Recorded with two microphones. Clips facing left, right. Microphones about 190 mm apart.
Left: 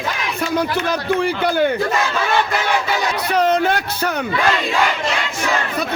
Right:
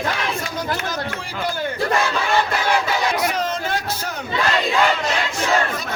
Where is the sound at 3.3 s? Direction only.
65° left (ahead or behind).